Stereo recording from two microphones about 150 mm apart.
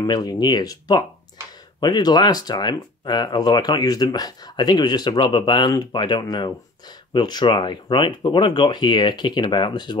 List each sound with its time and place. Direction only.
0.0 s speech: 25° left (ahead or behind)